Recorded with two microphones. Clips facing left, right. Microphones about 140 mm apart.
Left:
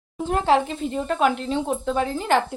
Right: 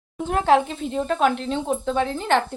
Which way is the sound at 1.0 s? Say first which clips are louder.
Even; 5° left (ahead or behind).